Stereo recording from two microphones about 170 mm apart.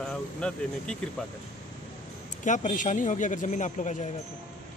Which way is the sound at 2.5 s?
45° left (ahead or behind).